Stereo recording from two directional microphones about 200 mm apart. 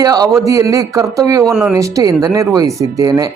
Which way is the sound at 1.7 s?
15° right (ahead or behind).